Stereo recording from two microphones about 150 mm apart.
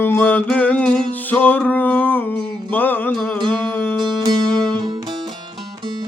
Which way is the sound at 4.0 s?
30° right (ahead or behind).